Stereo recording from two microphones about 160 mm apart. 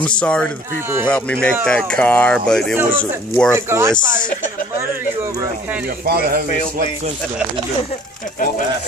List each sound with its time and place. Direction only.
0.0 s speech: 5° left (ahead or behind)
3.5 s speech: 15° right (ahead or behind)
6.0 s speech: 70° right (ahead or behind)